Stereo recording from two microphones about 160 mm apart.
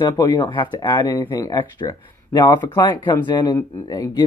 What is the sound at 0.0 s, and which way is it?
Speech, 25° left (ahead or behind).